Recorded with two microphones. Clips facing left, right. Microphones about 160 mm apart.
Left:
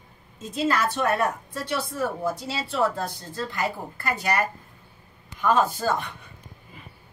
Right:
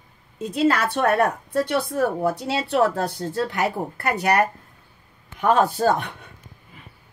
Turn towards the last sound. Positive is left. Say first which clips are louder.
# right 5 dB
turn(degrees=-70)  # may be behind; listen again after turning